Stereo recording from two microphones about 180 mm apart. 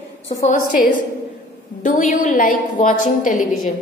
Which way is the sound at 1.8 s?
45° left (ahead or behind).